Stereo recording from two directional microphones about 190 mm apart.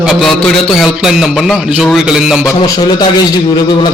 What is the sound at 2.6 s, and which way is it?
Speech, 20° left (ahead or behind).